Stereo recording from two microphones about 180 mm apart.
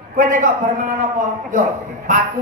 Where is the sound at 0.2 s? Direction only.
50° right (ahead or behind).